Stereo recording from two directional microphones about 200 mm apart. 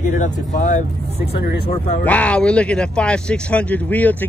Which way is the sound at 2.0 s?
5° left (ahead or behind).